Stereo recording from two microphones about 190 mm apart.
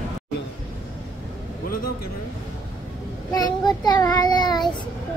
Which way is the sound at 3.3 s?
20° left (ahead or behind).